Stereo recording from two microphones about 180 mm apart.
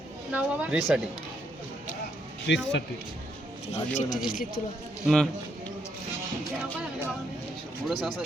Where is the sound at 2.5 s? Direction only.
90° left.